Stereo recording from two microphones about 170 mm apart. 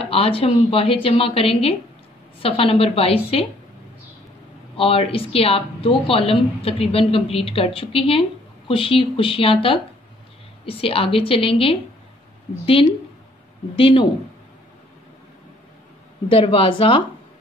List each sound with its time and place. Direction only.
0.0 s a woman's voice: 35° left (ahead or behind)
4.7 s a woman's voice: 35° left (ahead or behind)
13.7 s a woman's voice: 30° left (ahead or behind)
16.3 s a woman's voice: 35° left (ahead or behind)